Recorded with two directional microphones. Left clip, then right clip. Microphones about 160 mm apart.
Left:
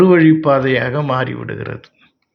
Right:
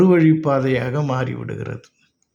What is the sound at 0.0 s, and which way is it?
Speech, 20° right (ahead or behind).